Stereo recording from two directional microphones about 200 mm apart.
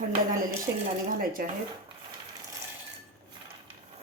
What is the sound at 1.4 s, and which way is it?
Speech, 45° right (ahead or behind).